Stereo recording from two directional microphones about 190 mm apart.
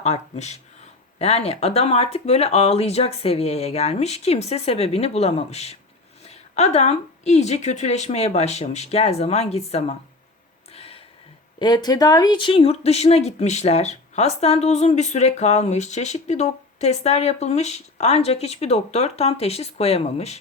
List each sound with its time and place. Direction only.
0.0 s speech: 35° left (ahead or behind)
11.6 s speech: 20° left (ahead or behind)